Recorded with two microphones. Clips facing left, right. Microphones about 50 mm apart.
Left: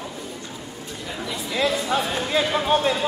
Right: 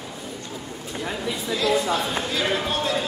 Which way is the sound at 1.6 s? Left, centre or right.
Left.